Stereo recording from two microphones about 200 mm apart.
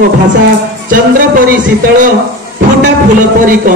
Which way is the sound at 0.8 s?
40° right (ahead or behind).